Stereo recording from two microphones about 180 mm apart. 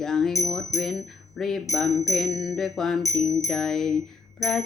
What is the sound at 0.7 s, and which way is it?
Speech, 20° left (ahead or behind).